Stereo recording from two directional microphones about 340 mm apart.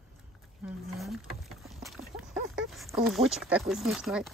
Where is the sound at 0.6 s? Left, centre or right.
Centre.